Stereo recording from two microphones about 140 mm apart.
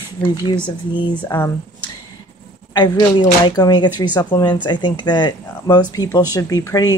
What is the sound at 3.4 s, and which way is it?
Speech, 30° left (ahead or behind).